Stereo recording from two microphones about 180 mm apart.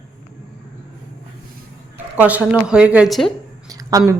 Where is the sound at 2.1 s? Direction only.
10° right (ahead or behind).